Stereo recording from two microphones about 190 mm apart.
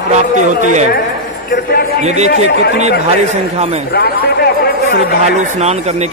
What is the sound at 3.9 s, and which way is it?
Speech, 55° left (ahead or behind).